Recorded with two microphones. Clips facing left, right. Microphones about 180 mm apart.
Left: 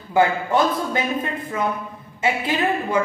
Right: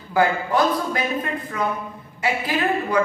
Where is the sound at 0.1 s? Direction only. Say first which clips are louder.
Left 1 dB; 25° left (ahead or behind).